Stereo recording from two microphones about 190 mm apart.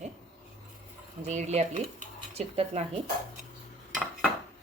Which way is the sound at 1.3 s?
35° right (ahead or behind).